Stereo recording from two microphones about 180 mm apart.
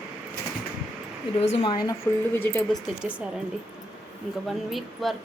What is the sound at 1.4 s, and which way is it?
Speech, 35° left (ahead or behind).